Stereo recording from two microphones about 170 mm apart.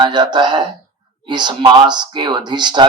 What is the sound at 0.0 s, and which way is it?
Speech, 25° right (ahead or behind).